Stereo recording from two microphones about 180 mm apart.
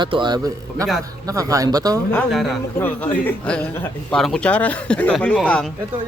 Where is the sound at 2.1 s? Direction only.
Centre (ahead or behind).